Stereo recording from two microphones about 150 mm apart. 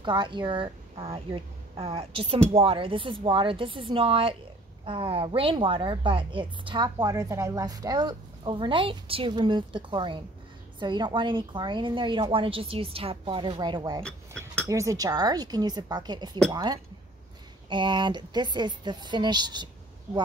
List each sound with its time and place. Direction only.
0.0 s a woman's voice: 30° right (ahead or behind)
7.2 s a woman's voice: 20° right (ahead or behind)